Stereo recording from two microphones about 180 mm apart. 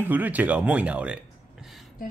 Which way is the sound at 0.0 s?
10° right (ahead or behind).